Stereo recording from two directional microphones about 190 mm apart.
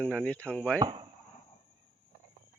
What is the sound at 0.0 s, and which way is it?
Speech, 5° left (ahead or behind).